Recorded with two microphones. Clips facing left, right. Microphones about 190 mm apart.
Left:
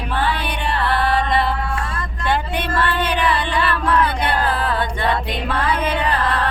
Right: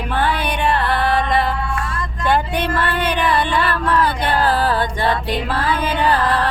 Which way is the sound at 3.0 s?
45° right (ahead or behind).